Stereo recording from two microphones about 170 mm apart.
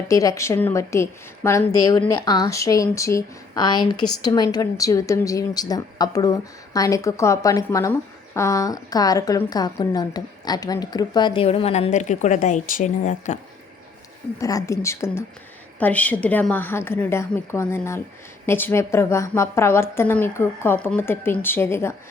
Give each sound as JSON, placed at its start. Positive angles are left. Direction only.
{"t": 0.1, "sound": "a woman's voice", "side_deg": 20}
{"t": 14.3, "sound": "a woman's voice", "side_deg": 20}